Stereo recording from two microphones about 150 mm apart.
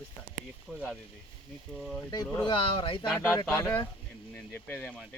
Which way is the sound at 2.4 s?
35° left (ahead or behind).